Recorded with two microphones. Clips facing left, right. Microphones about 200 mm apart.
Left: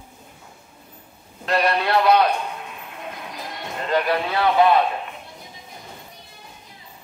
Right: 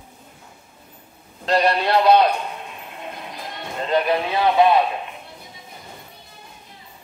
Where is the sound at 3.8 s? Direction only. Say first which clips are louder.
Right 2 dB; 20° right (ahead or behind).